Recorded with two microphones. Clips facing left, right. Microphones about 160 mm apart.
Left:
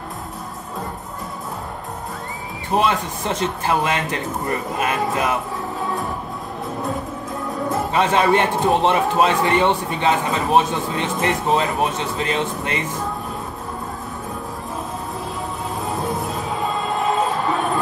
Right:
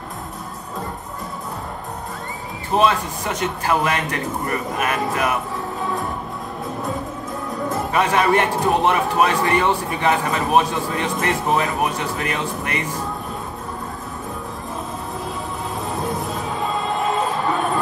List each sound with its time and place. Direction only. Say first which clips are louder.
2.7 s a man's voice: right 1 dB; 25° left (ahead or behind)
7.9 s a man's voice: left 1 dB; 25° left (ahead or behind)